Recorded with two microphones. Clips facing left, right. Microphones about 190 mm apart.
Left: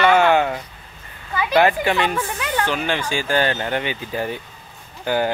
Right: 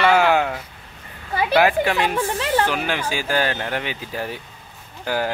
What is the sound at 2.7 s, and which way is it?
Speech, 5° right (ahead or behind).